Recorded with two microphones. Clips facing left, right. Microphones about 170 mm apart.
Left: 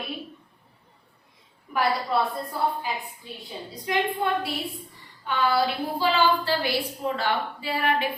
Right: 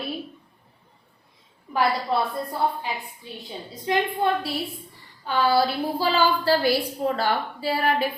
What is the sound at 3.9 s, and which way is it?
Speech, 25° right (ahead or behind).